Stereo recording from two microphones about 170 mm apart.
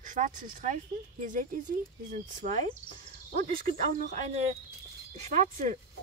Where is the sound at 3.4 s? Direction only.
60° right (ahead or behind).